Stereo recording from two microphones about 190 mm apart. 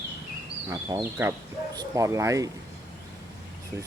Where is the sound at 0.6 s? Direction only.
15° right (ahead or behind).